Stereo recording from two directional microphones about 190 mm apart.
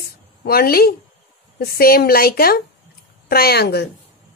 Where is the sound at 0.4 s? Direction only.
55° left (ahead or behind).